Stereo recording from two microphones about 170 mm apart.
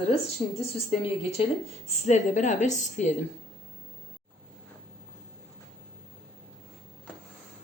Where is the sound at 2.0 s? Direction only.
45° left (ahead or behind).